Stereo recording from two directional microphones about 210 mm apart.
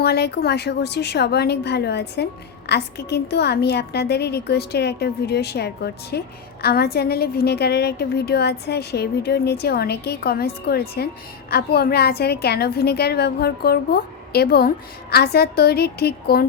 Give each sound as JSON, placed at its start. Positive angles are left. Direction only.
{"t": 0.0, "sound": "a woman's voice", "side_deg": 50}